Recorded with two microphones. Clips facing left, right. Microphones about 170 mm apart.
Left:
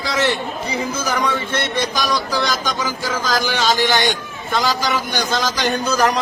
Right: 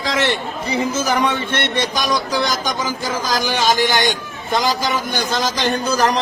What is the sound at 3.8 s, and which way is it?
Speech, 45° right (ahead or behind).